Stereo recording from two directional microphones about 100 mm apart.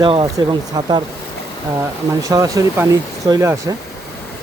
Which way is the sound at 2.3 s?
35° right (ahead or behind).